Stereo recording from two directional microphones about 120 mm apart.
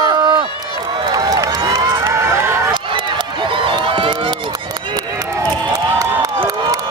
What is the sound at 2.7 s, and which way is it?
Run, 40° right (ahead or behind).